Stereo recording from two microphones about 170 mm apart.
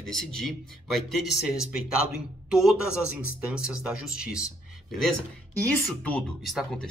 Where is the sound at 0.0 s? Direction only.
5° left (ahead or behind).